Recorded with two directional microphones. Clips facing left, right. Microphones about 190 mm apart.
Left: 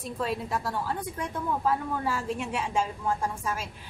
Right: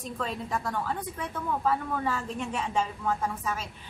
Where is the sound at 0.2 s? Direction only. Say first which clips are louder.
Left 2 dB; 10° left (ahead or behind).